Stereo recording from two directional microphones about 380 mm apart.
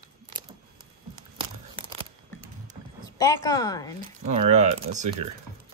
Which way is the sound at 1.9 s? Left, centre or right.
Centre.